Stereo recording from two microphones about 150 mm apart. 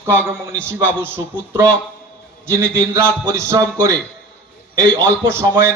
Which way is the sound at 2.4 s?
20° right (ahead or behind).